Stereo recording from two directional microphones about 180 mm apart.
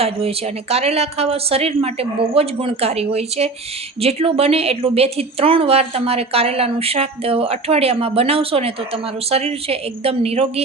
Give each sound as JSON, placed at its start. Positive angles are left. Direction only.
{"t": 0.0, "sound": "a woman's voice", "side_deg": -35}